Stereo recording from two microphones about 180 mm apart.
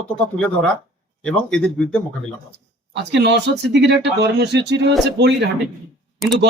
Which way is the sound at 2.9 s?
70° right (ahead or behind).